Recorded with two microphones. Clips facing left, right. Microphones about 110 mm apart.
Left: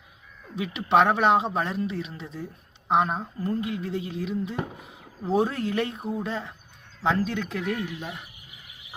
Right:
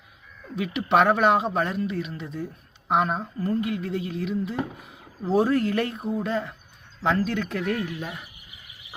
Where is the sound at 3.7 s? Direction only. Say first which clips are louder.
Right 2 dB; 60° right (ahead or behind).